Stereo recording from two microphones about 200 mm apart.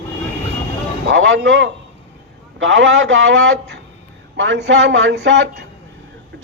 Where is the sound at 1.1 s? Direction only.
65° right (ahead or behind).